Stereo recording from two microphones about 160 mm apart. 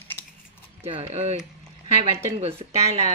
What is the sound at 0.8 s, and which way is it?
Speech, 45° right (ahead or behind).